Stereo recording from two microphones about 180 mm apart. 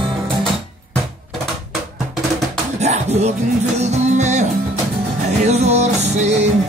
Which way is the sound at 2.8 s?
40° right (ahead or behind).